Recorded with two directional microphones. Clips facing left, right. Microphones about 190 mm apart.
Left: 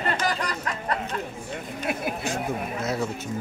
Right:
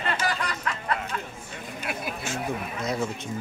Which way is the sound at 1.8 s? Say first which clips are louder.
Left 4 dB; 30° left (ahead or behind).